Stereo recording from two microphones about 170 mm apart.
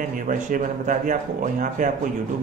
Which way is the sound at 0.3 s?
50° right (ahead or behind).